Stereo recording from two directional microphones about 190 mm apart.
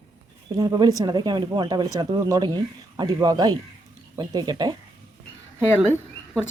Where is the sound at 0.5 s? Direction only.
20° right (ahead or behind).